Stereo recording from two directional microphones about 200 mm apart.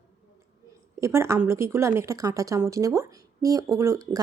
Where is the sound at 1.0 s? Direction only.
15° right (ahead or behind).